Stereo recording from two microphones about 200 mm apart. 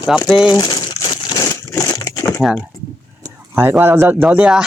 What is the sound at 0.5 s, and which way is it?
Crumpling, 20° left (ahead or behind).